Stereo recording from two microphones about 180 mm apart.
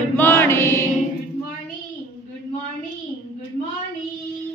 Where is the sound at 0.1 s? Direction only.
15° left (ahead or behind).